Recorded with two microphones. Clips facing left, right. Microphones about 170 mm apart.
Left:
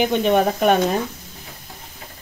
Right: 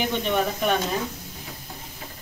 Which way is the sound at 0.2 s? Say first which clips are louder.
Left 7 dB; 55° left (ahead or behind).